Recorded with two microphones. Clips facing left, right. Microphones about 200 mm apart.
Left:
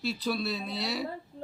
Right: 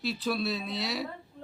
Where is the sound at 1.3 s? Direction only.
30° left (ahead or behind).